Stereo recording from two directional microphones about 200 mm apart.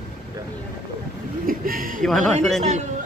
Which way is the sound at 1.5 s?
45° right (ahead or behind).